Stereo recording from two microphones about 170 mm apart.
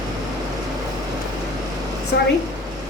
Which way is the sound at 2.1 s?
90° left.